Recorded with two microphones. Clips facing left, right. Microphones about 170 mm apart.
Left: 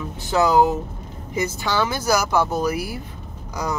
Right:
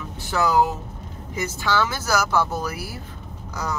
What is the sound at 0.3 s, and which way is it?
Speech, 20° left (ahead or behind).